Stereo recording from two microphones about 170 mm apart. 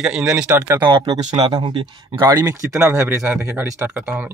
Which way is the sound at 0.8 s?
25° right (ahead or behind).